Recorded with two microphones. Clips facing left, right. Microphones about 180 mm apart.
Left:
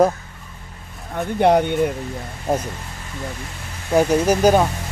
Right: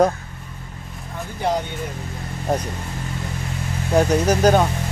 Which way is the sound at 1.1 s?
65° left (ahead or behind).